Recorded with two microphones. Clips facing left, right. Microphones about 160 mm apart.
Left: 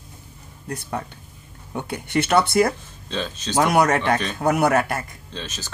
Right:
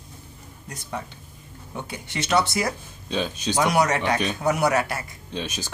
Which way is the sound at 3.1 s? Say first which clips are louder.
Right 2 dB; 10° right (ahead or behind).